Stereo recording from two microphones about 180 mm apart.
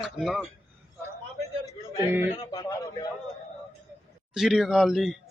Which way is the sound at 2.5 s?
20° left (ahead or behind).